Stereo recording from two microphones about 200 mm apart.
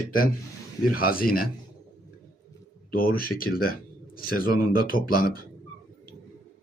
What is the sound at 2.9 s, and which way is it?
A man's voice, 45° left (ahead or behind).